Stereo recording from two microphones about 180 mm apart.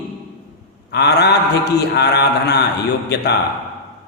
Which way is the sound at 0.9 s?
65° left (ahead or behind).